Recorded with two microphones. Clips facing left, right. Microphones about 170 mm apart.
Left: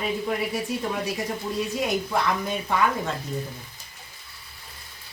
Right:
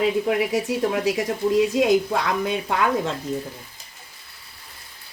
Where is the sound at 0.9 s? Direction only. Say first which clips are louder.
Right 6 dB; 90° right.